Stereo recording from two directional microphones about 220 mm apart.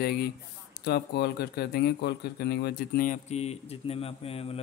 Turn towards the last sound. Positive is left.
turn(degrees=25)  # may be behind; listen again after turning